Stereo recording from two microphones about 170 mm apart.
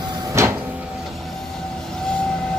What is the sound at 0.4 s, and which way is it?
Vehicle, 15° right (ahead or behind).